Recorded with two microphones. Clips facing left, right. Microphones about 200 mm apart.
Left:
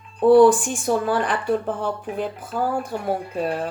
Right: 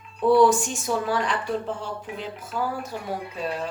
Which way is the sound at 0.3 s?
55° left (ahead or behind).